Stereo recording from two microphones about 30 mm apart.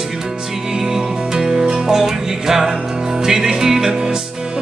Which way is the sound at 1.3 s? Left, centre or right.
Right.